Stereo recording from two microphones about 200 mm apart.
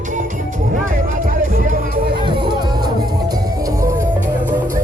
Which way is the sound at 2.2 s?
25° right (ahead or behind).